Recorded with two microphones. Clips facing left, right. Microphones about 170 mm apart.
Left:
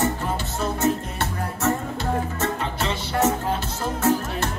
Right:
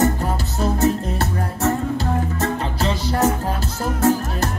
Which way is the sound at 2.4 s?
35° right (ahead or behind).